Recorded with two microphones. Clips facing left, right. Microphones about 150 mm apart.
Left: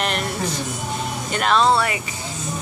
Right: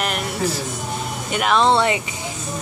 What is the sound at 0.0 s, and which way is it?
Music, 5° right (ahead or behind).